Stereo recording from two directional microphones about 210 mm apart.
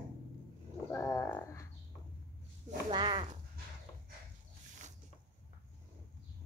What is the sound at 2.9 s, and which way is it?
Speech, 20° right (ahead or behind).